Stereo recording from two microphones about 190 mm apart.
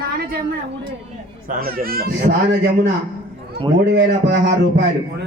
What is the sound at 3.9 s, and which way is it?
Speech, 60° right (ahead or behind).